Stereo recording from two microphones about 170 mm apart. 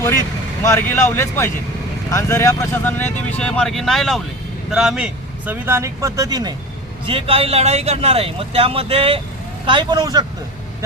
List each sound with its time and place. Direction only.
0.6 s a man's voice: 15° left (ahead or behind); by 6.5 s 20° right (ahead or behind)
7.1 s a man's voice: 35° right (ahead or behind)